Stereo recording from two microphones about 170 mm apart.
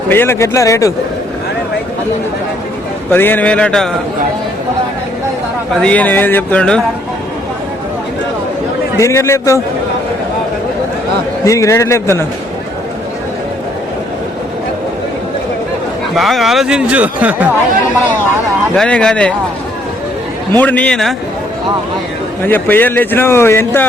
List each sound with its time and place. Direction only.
0.1 s speech: 15° left (ahead or behind)
3.1 s speech: 10° left (ahead or behind)
5.7 s speech: 5° left (ahead or behind)
9.0 s speech: 15° left (ahead or behind)
11.4 s speech: 20° left (ahead or behind)
16.1 s speech: centre (ahead or behind)
18.8 s speech: 5° left (ahead or behind)
20.6 s speech: 10° left (ahead or behind)
22.4 s speech: 10° left (ahead or behind)